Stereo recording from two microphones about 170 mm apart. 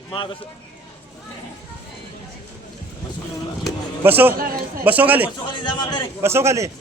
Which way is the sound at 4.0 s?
10° right (ahead or behind).